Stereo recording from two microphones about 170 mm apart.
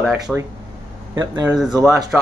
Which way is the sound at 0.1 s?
15° right (ahead or behind).